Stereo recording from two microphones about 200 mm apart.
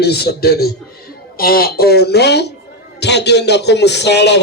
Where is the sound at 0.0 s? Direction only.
55° left (ahead or behind).